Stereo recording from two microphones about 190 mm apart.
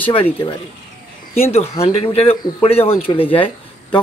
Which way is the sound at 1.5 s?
35° left (ahead or behind).